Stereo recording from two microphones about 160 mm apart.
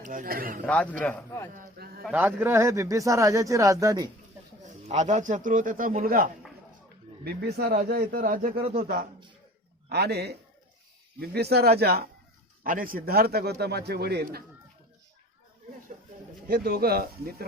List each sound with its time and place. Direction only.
0.0 s a man's voice: 60° right (ahead or behind)
0.6 s a man's voice: 10° left (ahead or behind)
1.8 s a man's voice: 75° right (ahead or behind)
2.1 s speech: 15° right (ahead or behind)
4.6 s a man's voice: 50° right (ahead or behind); by 6.3 s 65° right (ahead or behind)
7.3 s a man's voice: 85° right; by 8.5 s 60° right (ahead or behind)
8.8 s a man's voice: 70° right (ahead or behind)
9.9 s a man's voice: 90° right
12.6 s a man's voice: 60° right (ahead or behind); by 14.4 s 85° right
16.5 s a man's voice: 70° right (ahead or behind)